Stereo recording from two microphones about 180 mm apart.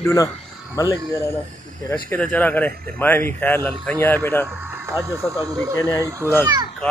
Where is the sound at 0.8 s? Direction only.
20° left (ahead or behind).